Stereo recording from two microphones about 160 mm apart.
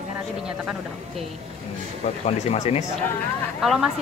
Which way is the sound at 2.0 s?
40° left (ahead or behind).